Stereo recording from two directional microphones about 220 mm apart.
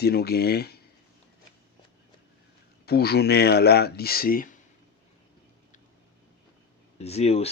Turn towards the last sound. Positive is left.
turn(degrees=30)  # may be behind; listen again after turning